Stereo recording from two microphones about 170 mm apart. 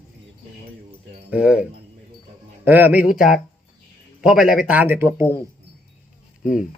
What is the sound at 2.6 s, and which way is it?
Speech, 10° right (ahead or behind).